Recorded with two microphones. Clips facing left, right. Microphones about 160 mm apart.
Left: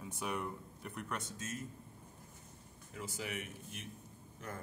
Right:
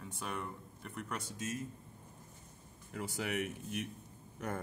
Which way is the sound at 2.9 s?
60° right (ahead or behind).